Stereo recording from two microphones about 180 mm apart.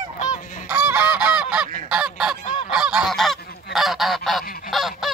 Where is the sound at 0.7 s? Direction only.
10° right (ahead or behind).